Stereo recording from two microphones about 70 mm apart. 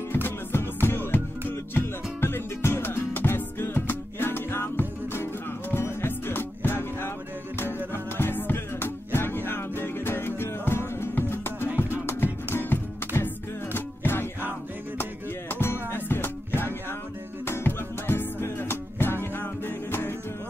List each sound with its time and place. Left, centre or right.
0.1 s music: left